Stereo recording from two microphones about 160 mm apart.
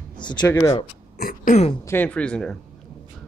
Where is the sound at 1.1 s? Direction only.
65° left (ahead or behind).